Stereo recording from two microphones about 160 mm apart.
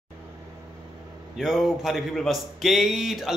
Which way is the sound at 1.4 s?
5° right (ahead or behind).